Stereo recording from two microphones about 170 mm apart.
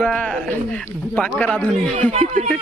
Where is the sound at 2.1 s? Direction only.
40° right (ahead or behind).